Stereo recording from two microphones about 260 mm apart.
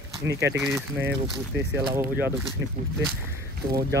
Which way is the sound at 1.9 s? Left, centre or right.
Centre.